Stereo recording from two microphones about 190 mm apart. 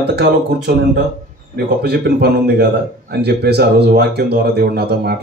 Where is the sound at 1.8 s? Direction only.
55° right (ahead or behind).